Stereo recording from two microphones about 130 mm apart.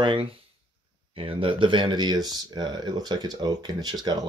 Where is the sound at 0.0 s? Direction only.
40° right (ahead or behind).